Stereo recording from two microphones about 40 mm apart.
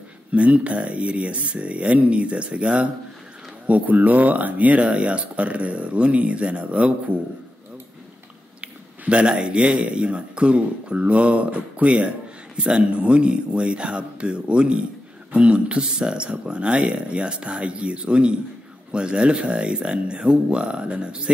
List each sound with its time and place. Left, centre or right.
0.3 s speech: right
8.5 s a sound: right
9.3 s speech: right